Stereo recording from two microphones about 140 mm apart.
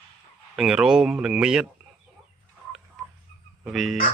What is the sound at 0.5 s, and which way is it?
Speech, 5° right (ahead or behind).